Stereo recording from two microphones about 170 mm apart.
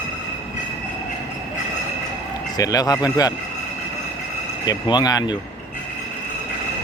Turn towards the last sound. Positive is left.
turn(degrees=25)  # may be behind; listen again after turning